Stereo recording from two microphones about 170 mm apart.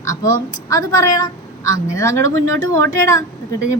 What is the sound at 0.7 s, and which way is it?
A woman's voice, 20° left (ahead or behind).